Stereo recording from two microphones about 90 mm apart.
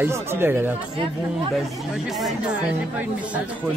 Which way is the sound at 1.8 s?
Centre (ahead or behind).